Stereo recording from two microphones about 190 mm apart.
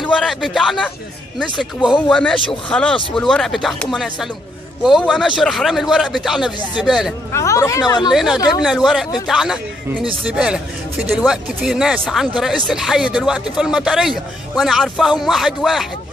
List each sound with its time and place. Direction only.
0.0 s a man's voice: centre (ahead or behind)
7.3 s speech: 15° left (ahead or behind)
8.1 s speech: centre (ahead or behind)